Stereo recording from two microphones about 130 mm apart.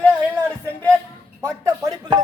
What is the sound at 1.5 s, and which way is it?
Speech, 25° right (ahead or behind).